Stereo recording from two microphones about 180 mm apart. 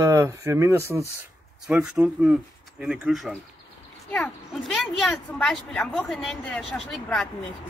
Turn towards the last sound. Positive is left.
turn(degrees=5)  # may be behind; listen again after turning